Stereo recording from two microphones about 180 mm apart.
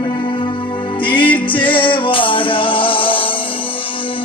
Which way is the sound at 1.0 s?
25° left (ahead or behind).